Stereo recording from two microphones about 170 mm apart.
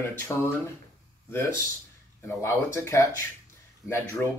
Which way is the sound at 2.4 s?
15° left (ahead or behind).